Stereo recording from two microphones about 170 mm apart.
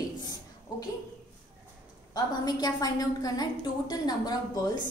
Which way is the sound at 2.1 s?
25° left (ahead or behind).